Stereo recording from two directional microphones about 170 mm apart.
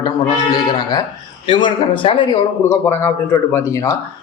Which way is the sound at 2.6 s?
15° left (ahead or behind).